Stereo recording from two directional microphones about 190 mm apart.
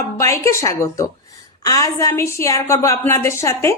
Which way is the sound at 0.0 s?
15° left (ahead or behind).